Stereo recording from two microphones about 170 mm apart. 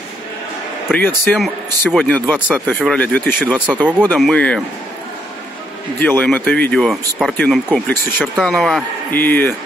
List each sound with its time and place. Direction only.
0.9 s speech: 5° left (ahead or behind)
2.3 s speech: 5° right (ahead or behind)
5.9 s speech: 10° left (ahead or behind)